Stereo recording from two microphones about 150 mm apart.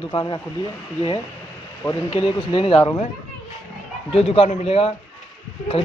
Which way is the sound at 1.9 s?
30° left (ahead or behind).